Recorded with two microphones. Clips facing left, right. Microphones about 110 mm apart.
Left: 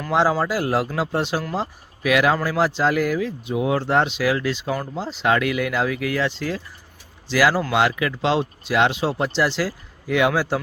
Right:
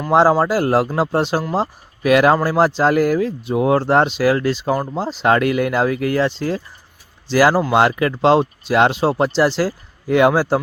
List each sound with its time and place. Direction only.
0.1 s speech: 40° right (ahead or behind)